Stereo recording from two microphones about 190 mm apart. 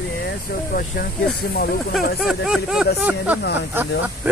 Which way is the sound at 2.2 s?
5° right (ahead or behind).